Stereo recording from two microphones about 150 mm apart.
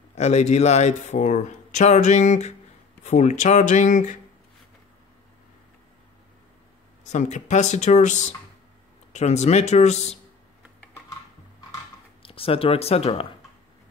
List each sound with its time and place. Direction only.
0.1 s speech: 50° left (ahead or behind)
7.1 s speech: 50° left (ahead or behind)
12.2 s speech: 40° left (ahead or behind)